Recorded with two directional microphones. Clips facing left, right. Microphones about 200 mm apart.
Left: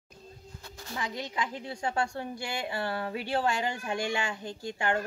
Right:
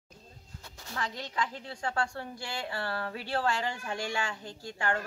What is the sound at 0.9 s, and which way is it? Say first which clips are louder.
A woman's voice: left 1 dB; 15° left (ahead or behind).